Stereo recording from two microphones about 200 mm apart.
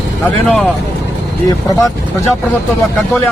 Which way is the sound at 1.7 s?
15° left (ahead or behind).